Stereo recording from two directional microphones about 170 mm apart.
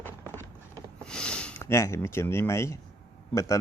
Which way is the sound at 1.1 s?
5° left (ahead or behind).